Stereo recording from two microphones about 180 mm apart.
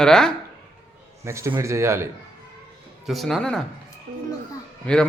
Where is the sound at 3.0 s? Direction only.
Centre (ahead or behind).